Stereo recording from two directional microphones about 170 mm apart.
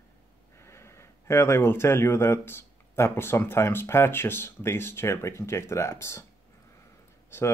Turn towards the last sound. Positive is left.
turn(degrees=15)  # may be behind; listen again after turning